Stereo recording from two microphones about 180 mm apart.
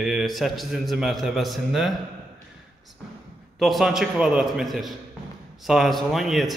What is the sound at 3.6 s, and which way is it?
Speech, centre (ahead or behind).